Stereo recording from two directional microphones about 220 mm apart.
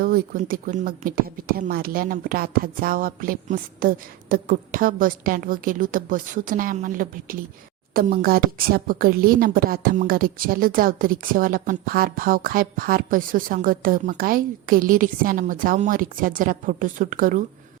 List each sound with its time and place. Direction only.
0.0 s a woman's voice: 40° right (ahead or behind)